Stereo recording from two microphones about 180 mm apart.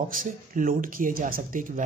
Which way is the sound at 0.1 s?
50° right (ahead or behind).